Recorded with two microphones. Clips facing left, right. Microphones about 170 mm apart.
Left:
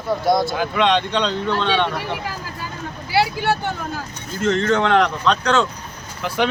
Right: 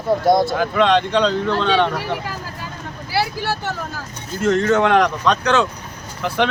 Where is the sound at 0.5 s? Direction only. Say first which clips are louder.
Right 2 dB; centre (ahead or behind).